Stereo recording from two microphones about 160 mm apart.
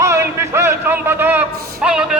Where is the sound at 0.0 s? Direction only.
20° right (ahead or behind).